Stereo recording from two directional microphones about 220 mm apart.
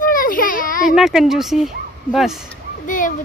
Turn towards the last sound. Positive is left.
turn(degrees=35)  # may be behind; listen again after turning